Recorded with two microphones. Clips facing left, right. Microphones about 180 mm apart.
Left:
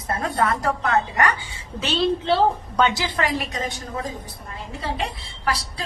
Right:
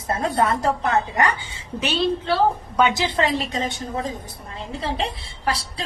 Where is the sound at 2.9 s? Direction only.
25° right (ahead or behind).